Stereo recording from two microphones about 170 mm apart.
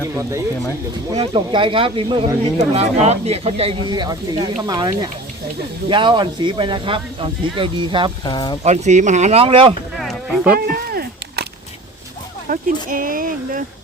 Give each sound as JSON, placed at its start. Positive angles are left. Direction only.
{"t": 0.0, "sound": "speech", "side_deg": -15}
{"t": 1.1, "sound": "speech", "side_deg": -30}
{"t": 2.6, "sound": "speech", "side_deg": -40}
{"t": 8.2, "sound": "speech", "side_deg": 25}
{"t": 8.6, "sound": "speech", "side_deg": -40}
{"t": 10.0, "sound": "music", "side_deg": 0}
{"t": 12.5, "sound": "speech", "side_deg": -50}